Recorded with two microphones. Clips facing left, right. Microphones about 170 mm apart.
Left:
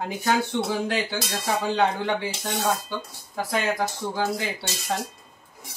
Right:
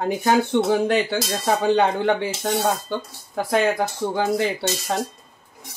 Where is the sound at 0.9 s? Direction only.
60° right (ahead or behind).